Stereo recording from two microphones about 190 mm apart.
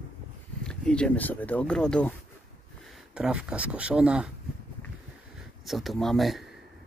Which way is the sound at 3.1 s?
5° right (ahead or behind).